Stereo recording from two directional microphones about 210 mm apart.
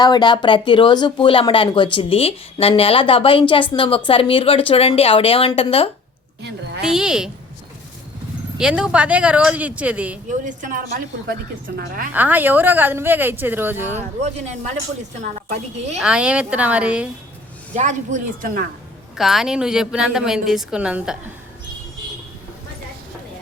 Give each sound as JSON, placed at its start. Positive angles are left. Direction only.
{"t": 0.0, "sound": "speech", "side_deg": 20}
{"t": 6.8, "sound": "a woman's voice", "side_deg": -5}
{"t": 8.5, "sound": "a woman's voice", "side_deg": -5}
{"t": 10.4, "sound": "a woman's voice", "side_deg": -40}
{"t": 12.1, "sound": "a woman's voice", "side_deg": -10}
{"t": 14.2, "sound": "a woman's voice", "side_deg": -35}
{"t": 16.0, "sound": "a woman's voice", "side_deg": -5}
{"t": 17.7, "sound": "a woman's voice", "side_deg": -35}
{"t": 19.1, "sound": "a woman's voice", "side_deg": 0}